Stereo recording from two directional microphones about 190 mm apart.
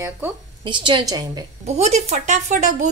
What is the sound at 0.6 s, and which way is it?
Speech, 25° right (ahead or behind).